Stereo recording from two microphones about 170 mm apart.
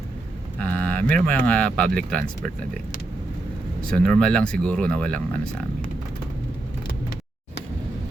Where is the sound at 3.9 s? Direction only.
5° left (ahead or behind).